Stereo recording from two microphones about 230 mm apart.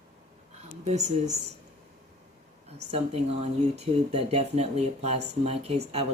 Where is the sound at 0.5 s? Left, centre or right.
Right.